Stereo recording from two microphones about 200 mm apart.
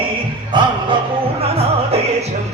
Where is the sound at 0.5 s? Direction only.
25° right (ahead or behind).